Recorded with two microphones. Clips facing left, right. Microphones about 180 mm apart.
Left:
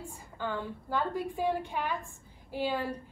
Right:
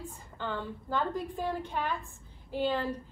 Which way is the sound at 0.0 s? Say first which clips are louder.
Left 1 dB; 10° left (ahead or behind).